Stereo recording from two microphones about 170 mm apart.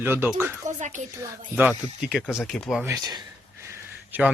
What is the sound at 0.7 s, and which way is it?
Speech, 45° right (ahead or behind).